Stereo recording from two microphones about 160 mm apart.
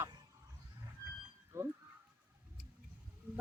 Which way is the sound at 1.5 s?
15° right (ahead or behind).